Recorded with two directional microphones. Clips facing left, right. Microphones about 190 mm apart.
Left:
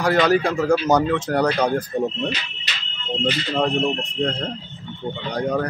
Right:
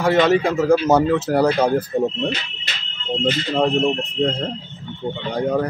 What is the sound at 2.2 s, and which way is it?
Speech, 50° right (ahead or behind).